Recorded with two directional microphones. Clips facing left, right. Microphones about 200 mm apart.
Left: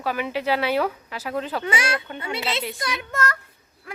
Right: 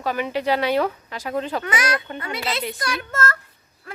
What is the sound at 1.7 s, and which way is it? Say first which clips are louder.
A child's voice: right 1 dB; 30° left (ahead or behind).